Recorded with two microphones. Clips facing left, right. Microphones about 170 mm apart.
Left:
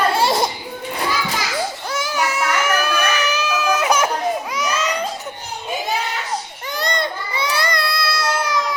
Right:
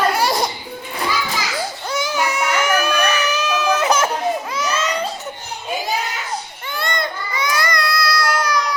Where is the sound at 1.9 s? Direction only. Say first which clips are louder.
Right 4 dB; centre (ahead or behind).